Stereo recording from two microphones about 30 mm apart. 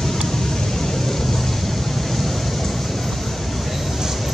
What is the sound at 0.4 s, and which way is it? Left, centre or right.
Vehicle, centre.